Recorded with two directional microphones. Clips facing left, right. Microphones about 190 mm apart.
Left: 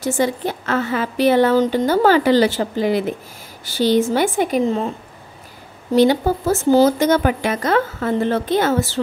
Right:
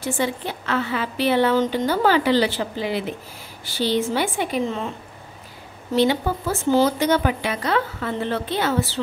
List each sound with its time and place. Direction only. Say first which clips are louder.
0.0 s a woman's voice: left 5 dB; 45° left (ahead or behind)
5.9 s a woman's voice: left 5 dB; 40° left (ahead or behind)